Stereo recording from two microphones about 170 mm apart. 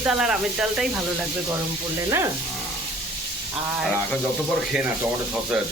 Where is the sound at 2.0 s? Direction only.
15° right (ahead or behind).